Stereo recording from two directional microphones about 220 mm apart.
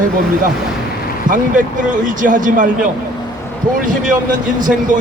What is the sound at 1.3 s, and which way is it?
A man's voice, 35° right (ahead or behind).